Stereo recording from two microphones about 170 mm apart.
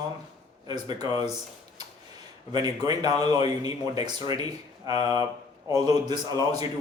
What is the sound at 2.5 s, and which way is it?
A man's voice, 20° right (ahead or behind).